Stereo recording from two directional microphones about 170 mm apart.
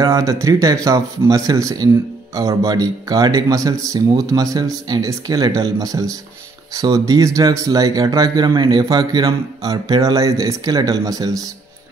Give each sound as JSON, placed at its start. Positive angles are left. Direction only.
{"t": 0.0, "sound": "speech", "side_deg": -20}